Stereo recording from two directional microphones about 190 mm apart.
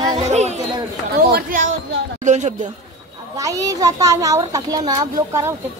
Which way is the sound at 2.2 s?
40° right (ahead or behind).